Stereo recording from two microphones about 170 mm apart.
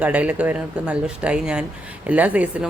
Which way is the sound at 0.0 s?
10° right (ahead or behind).